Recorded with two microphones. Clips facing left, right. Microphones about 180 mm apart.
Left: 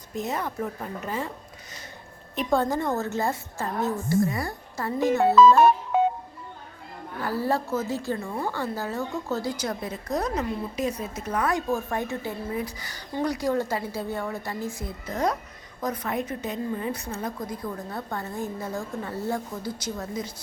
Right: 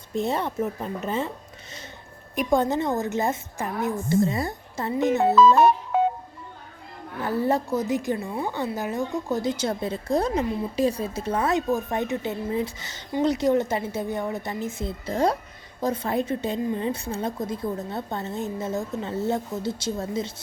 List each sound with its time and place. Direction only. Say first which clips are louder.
0.1 s a woman's voice: right 4 dB; 30° right (ahead or behind)
2.3 s a woman's voice: right 2 dB; 15° right (ahead or behind)
7.2 s a woman's voice: right 3 dB; 20° right (ahead or behind)